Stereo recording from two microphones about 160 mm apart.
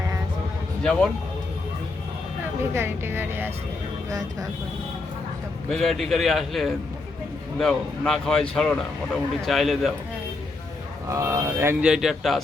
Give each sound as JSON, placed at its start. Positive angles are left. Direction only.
{"t": 0.8, "sound": "speech", "side_deg": 5}
{"t": 2.7, "sound": "a woman's voice", "side_deg": -15}
{"t": 5.6, "sound": "speech", "side_deg": 0}
{"t": 11.1, "sound": "a woman's voice", "side_deg": -20}
{"t": 11.8, "sound": "speech", "side_deg": -5}